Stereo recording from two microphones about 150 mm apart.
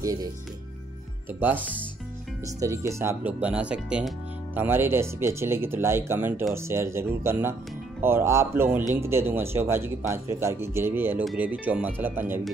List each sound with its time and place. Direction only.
0.0 s speech: 20° right (ahead or behind)
2.6 s a man's voice: 20° right (ahead or behind)